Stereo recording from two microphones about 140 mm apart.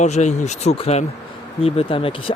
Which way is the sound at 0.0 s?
55° left (ahead or behind).